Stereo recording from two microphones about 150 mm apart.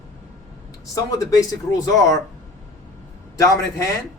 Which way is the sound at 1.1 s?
25° left (ahead or behind).